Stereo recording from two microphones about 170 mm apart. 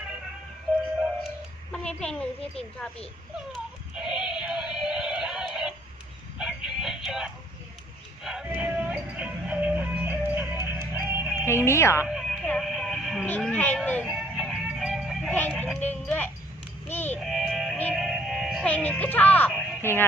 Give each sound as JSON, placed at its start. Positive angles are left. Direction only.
{"t": 1.7, "sound": "a sound", "side_deg": 5}
{"t": 3.5, "sound": "music", "side_deg": -5}
{"t": 6.4, "sound": "a sound", "side_deg": -5}
{"t": 8.2, "sound": "music", "side_deg": -5}
{"t": 11.6, "sound": "speech", "side_deg": 15}
{"t": 12.0, "sound": "music", "side_deg": 0}
{"t": 13.8, "sound": "a child's voice", "side_deg": 10}
{"t": 14.1, "sound": "music", "side_deg": 0}
{"t": 16.9, "sound": "a sound", "side_deg": 10}
{"t": 17.2, "sound": "sheep", "side_deg": 0}
{"t": 17.9, "sound": "music", "side_deg": 0}
{"t": 19.5, "sound": "a sound", "side_deg": -5}
{"t": 19.8, "sound": "music", "side_deg": 15}